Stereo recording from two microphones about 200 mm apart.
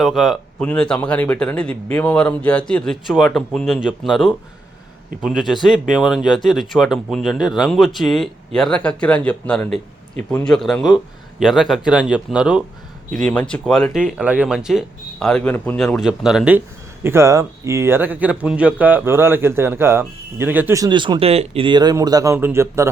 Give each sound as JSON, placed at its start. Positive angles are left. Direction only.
{"t": 0.0, "sound": "speech", "side_deg": 0}